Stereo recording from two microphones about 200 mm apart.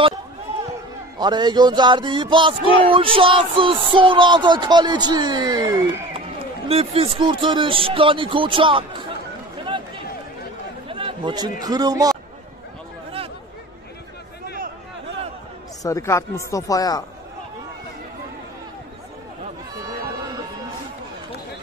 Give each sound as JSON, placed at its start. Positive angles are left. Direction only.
{"t": 1.1, "sound": "music", "side_deg": -20}
{"t": 9.6, "sound": "run", "side_deg": -25}
{"t": 10.9, "sound": "chatter", "side_deg": -25}
{"t": 11.6, "sound": "music", "side_deg": -20}
{"t": 15.8, "sound": "speech", "side_deg": 15}